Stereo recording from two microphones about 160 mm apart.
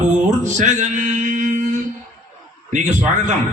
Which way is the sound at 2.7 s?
50° right (ahead or behind).